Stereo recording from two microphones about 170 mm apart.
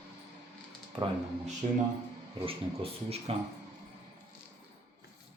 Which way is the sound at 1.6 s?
45° right (ahead or behind).